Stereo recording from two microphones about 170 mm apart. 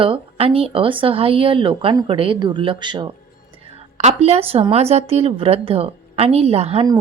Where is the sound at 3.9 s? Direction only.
40° right (ahead or behind).